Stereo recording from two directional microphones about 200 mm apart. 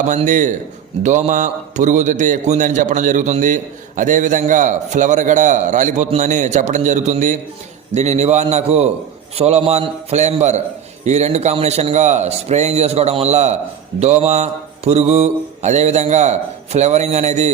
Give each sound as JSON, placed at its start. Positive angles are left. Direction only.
{"t": 0.1, "sound": "a man's voice", "side_deg": -40}